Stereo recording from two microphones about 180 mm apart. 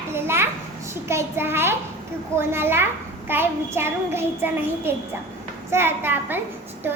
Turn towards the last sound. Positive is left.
turn(degrees=-10)  # may be behind; listen again after turning